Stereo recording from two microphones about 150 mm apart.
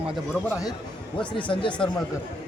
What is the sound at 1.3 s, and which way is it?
Speech, 35° left (ahead or behind).